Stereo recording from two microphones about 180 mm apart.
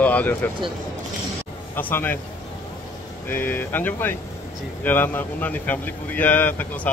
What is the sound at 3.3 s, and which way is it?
Speech, 10° left (ahead or behind).